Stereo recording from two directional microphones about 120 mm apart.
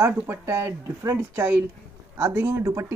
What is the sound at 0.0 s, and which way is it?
Speech, 20° right (ahead or behind).